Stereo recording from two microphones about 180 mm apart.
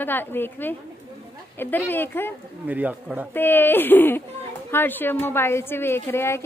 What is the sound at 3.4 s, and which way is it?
A woman's voice, 10° left (ahead or behind).